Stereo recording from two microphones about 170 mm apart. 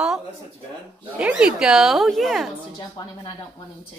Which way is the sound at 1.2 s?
5° right (ahead or behind).